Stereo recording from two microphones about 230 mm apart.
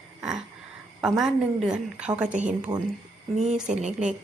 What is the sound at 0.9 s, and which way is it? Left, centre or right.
A woman's voice, centre.